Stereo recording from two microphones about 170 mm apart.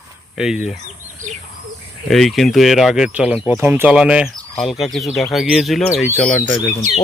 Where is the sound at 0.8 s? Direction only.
45° right (ahead or behind).